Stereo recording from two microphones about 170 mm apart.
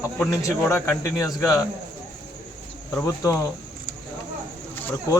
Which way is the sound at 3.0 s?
15° left (ahead or behind).